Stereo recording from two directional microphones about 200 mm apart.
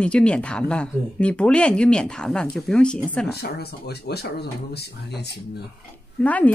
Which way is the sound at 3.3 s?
55° left (ahead or behind).